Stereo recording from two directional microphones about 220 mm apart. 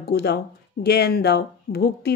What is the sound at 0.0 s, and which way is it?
Speech, 45° left (ahead or behind).